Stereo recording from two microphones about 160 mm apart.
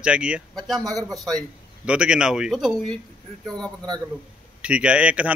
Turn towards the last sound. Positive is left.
turn(degrees=-10)  # may be behind; listen again after turning